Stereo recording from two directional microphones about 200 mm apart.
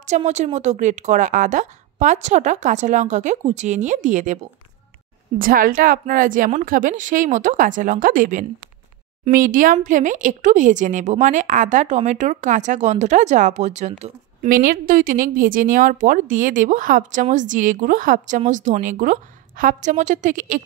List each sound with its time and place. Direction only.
0.0 s speech: 35° right (ahead or behind)
5.4 s speech: 45° right (ahead or behind)